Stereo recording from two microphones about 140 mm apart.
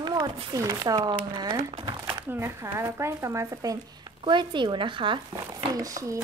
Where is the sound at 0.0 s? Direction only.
25° right (ahead or behind).